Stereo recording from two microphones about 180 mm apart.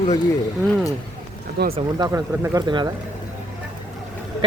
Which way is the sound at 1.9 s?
15° right (ahead or behind).